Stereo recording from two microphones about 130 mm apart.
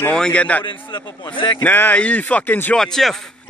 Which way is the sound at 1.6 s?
15° left (ahead or behind).